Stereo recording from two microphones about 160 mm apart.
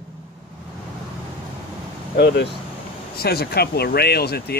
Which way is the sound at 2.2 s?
90° left.